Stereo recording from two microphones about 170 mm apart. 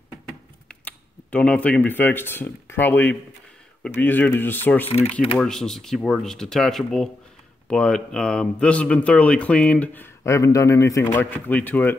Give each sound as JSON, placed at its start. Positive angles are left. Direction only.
{"t": 0.7, "sound": "speech", "side_deg": 5}
{"t": 4.8, "sound": "speech", "side_deg": 40}
{"t": 5.4, "sound": "speech", "side_deg": 0}